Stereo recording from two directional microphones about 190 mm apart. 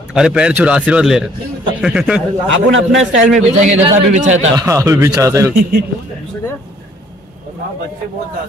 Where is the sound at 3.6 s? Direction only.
40° right (ahead or behind).